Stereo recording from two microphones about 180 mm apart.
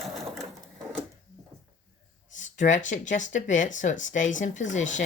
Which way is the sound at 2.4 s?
45° left (ahead or behind).